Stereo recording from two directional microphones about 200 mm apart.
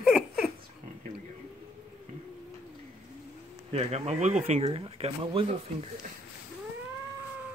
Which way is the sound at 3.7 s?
30° right (ahead or behind).